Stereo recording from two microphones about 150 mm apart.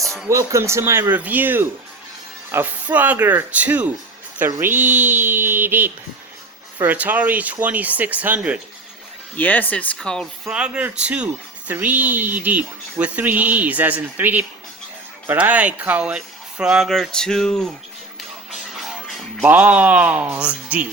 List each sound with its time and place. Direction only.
0.0 s music: centre (ahead or behind)
0.3 s speech: 20° right (ahead or behind)
9.3 s speech: 10° left (ahead or behind)
10.5 s speech: 5° right (ahead or behind)
18.5 s music: centre (ahead or behind)
19.5 s speech: 10° right (ahead or behind)